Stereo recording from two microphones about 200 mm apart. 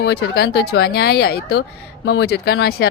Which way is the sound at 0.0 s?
55° left (ahead or behind).